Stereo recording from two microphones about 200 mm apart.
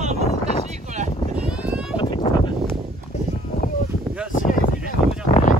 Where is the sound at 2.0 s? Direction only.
25° left (ahead or behind).